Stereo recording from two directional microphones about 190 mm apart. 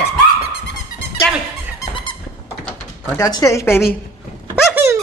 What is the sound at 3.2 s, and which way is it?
Speech, 20° left (ahead or behind).